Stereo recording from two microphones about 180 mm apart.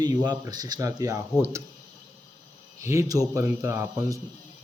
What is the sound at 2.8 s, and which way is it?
Speech, 15° right (ahead or behind).